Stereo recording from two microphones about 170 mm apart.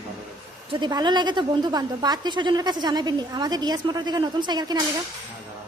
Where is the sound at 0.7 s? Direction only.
25° right (ahead or behind).